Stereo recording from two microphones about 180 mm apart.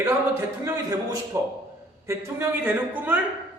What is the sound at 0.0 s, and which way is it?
Speech, 15° right (ahead or behind).